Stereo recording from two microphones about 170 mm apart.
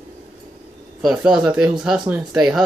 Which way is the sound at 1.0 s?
5° right (ahead or behind).